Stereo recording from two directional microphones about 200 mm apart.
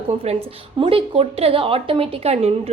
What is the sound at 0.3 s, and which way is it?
A woman's voice, 30° right (ahead or behind).